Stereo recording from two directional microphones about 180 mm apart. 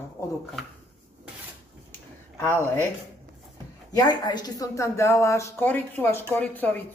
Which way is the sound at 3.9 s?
20° left (ahead or behind).